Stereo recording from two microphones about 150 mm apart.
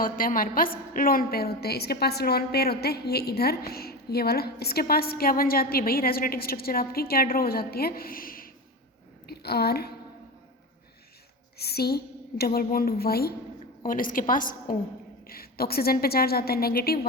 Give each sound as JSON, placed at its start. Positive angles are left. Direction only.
{"t": 0.0, "sound": "a woman's voice", "side_deg": 70}
{"t": 9.2, "sound": "a woman's voice", "side_deg": 90}
{"t": 11.5, "sound": "a woman's voice", "side_deg": 90}
{"t": 13.8, "sound": "a woman's voice", "side_deg": 65}
{"t": 15.3, "sound": "a woman's voice", "side_deg": 85}